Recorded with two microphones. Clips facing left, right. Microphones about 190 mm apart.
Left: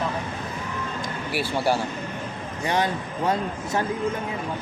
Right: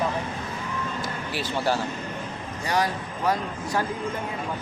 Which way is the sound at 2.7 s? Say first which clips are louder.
Even; 25° left (ahead or behind).